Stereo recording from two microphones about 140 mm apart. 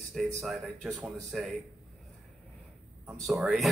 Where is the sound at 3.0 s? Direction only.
Centre (ahead or behind).